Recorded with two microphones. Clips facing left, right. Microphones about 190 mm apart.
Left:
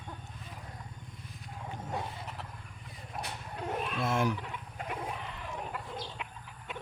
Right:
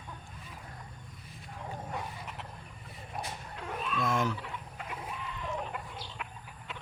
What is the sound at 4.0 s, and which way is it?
Chicken, 10° left (ahead or behind).